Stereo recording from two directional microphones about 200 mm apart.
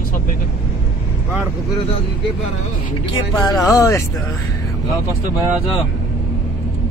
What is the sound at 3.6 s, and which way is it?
Speech, 15° left (ahead or behind).